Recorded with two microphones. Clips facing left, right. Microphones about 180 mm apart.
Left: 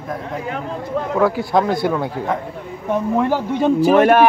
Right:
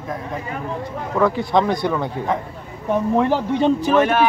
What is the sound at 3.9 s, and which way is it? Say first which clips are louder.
Speech: left 6 dB; 55° left (ahead or behind).